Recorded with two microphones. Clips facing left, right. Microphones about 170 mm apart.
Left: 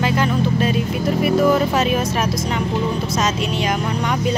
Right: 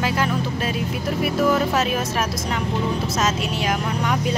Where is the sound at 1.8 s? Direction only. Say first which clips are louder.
Left 3 dB; centre (ahead or behind).